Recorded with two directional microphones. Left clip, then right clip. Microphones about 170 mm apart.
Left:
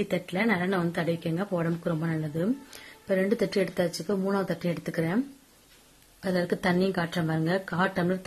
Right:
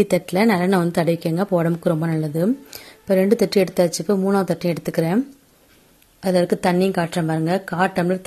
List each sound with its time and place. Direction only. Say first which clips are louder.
0.0 s a woman's voice: right 10 dB; 50° right (ahead or behind); by 5.2 s 35° right (ahead or behind)
6.2 s a woman's voice: right 9 dB; 25° right (ahead or behind)